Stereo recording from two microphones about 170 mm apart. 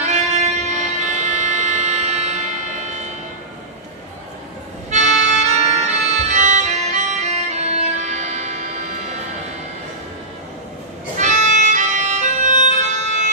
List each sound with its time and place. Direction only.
0.0 s music: 45° right (ahead or behind)
4.9 s music: 40° right (ahead or behind)
11.1 s music: 45° right (ahead or behind)